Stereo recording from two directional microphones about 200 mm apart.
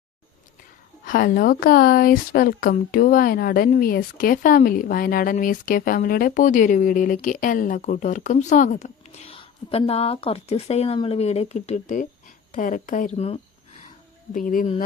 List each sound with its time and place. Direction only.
1.0 s a woman's voice: 40° left (ahead or behind)
14.3 s a woman's voice: 40° left (ahead or behind)